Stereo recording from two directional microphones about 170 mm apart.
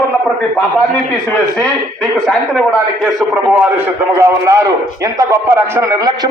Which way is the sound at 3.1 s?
5° right (ahead or behind).